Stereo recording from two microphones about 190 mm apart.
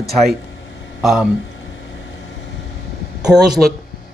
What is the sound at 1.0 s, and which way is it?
Speech, 5° right (ahead or behind).